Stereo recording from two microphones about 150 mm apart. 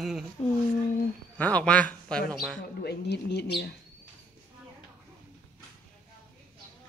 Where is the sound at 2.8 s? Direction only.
90° left.